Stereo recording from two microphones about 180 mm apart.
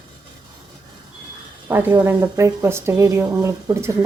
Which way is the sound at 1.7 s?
10° right (ahead or behind).